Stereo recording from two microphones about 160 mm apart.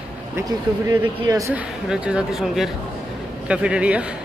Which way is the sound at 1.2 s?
20° right (ahead or behind).